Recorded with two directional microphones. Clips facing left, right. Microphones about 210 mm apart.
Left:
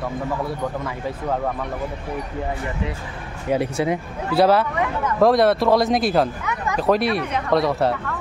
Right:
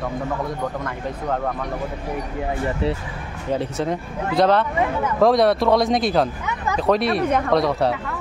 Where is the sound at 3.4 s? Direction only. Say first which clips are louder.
Left 2 dB; 10° left (ahead or behind).